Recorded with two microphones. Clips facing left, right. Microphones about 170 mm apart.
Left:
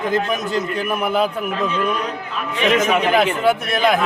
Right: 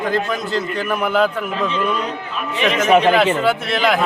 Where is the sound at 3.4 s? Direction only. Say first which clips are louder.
Left 1 dB; 15° left (ahead or behind).